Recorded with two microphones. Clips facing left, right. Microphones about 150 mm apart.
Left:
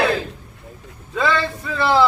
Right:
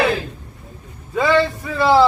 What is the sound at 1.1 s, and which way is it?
Speech, 20° right (ahead or behind).